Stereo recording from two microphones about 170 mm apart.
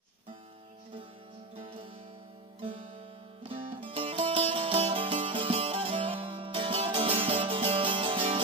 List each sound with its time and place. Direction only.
3.4 s music: 30° right (ahead or behind)